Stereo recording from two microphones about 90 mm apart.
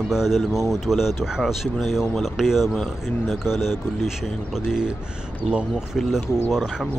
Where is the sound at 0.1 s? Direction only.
5° right (ahead or behind).